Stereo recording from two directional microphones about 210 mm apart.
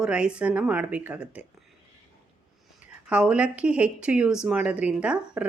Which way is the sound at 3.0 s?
5° right (ahead or behind).